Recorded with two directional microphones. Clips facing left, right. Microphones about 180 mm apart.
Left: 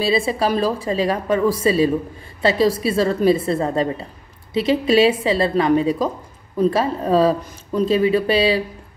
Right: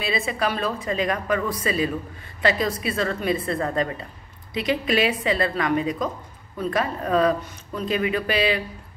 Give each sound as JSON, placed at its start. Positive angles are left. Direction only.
{"t": 0.0, "sound": "a woman's voice", "side_deg": 30}